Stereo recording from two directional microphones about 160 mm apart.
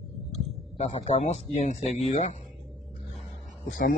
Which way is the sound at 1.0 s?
45° left (ahead or behind).